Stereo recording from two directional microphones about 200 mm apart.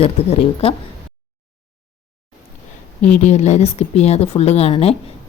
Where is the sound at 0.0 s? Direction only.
30° left (ahead or behind).